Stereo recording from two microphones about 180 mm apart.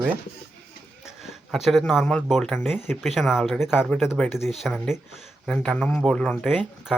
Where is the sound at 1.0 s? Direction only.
Centre (ahead or behind).